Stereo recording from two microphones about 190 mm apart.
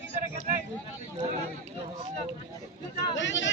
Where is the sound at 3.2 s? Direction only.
75° left (ahead or behind).